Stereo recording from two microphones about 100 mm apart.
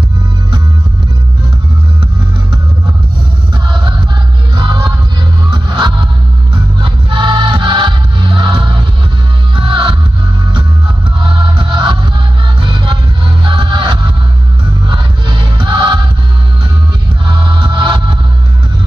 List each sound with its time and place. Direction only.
5.5 s music: 45° right (ahead or behind)
11.5 s music: 50° right (ahead or behind)
13.4 s music: 50° right (ahead or behind)
17.6 s music: 45° right (ahead or behind)